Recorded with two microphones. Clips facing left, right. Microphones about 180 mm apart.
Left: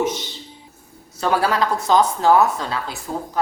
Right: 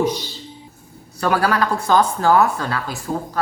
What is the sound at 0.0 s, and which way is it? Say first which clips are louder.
A woman's voice: right 2 dB; 20° left (ahead or behind).